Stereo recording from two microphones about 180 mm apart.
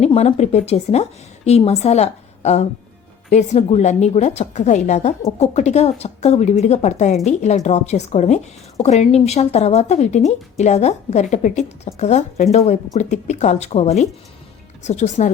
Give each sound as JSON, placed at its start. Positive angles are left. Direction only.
{"t": 0.0, "sound": "speech", "side_deg": 35}